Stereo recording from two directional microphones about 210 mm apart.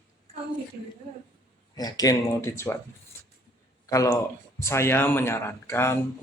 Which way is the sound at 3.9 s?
15° left (ahead or behind).